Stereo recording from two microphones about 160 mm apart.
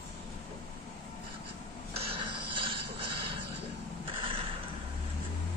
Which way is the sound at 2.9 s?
35° right (ahead or behind).